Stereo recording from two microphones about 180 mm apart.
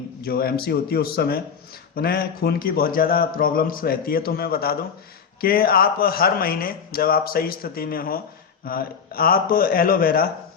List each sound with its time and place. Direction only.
0.2 s a man's voice: 55° left (ahead or behind)